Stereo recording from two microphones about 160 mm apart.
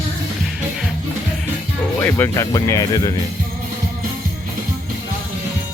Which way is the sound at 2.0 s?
15° left (ahead or behind).